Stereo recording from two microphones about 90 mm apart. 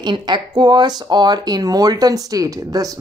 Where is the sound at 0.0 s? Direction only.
55° right (ahead or behind).